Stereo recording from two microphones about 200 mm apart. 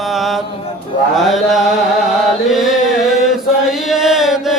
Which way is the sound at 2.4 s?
Centre (ahead or behind).